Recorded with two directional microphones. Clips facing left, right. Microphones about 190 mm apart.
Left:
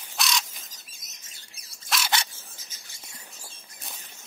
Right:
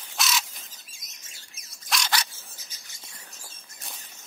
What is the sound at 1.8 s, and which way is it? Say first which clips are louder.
Dog: even; centre (ahead or behind).